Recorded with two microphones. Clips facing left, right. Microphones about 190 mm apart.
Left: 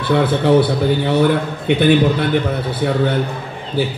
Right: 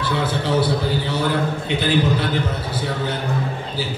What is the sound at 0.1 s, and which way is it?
A man's voice, 60° left (ahead or behind).